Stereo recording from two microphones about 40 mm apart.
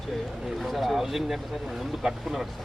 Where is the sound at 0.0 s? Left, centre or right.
Centre.